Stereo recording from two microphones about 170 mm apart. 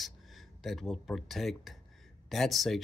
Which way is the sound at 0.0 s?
Centre (ahead or behind).